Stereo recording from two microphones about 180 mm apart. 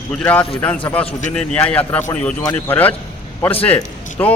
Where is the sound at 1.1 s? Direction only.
45° left (ahead or behind).